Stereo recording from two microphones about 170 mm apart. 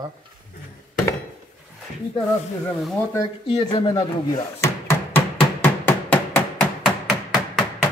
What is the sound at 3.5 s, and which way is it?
Speech, 35° left (ahead or behind).